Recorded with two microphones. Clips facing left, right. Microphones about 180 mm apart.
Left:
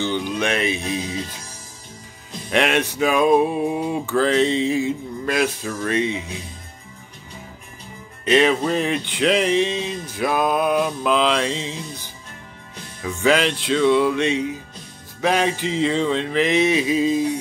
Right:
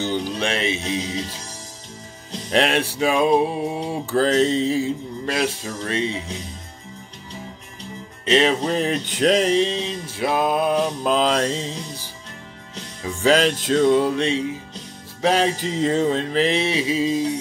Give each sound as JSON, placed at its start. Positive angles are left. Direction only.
{"t": 0.0, "sound": "speech", "side_deg": -40}
{"t": 2.5, "sound": "mantra", "side_deg": -35}
{"t": 8.3, "sound": "mantra", "side_deg": -30}
{"t": 13.0, "sound": "mantra", "side_deg": -35}